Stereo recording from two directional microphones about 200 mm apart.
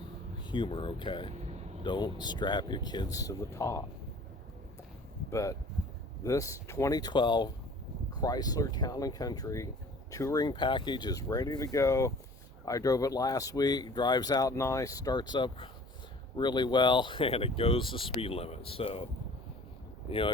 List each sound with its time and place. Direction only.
0.5 s speech: 25° left (ahead or behind)
5.3 s speech: 15° left (ahead or behind)
20.1 s speech: 25° left (ahead or behind)